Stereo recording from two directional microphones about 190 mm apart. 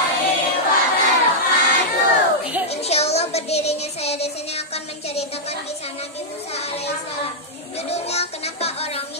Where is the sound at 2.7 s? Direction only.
35° left (ahead or behind).